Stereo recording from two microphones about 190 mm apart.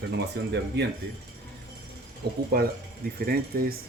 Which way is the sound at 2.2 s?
55° right (ahead or behind).